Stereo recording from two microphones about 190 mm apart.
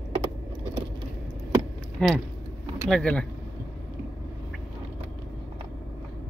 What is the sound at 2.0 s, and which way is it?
Speech, centre (ahead or behind).